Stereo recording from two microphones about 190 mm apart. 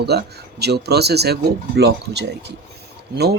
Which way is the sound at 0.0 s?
60° right (ahead or behind).